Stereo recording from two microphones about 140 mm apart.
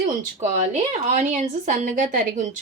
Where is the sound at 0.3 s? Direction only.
50° right (ahead or behind).